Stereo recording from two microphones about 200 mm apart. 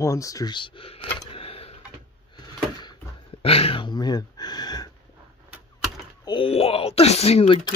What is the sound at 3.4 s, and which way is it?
Speech, 30° left (ahead or behind).